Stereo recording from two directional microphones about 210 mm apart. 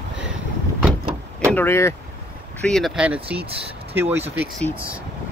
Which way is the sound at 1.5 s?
10° left (ahead or behind).